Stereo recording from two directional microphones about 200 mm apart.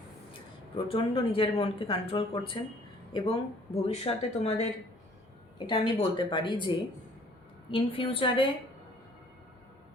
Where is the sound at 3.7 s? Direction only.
30° left (ahead or behind).